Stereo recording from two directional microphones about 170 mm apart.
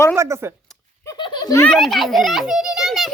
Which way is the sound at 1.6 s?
Centre (ahead or behind).